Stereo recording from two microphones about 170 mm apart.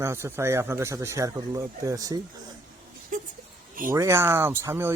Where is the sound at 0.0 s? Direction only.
15° right (ahead or behind).